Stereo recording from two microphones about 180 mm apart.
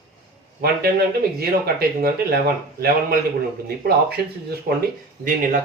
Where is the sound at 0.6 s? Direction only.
60° right (ahead or behind).